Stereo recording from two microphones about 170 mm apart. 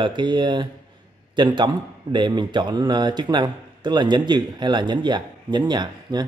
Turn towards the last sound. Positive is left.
turn(degrees=-25)  # may be behind; listen again after turning